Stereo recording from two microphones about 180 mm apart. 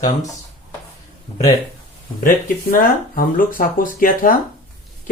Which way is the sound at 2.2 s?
50° left (ahead or behind).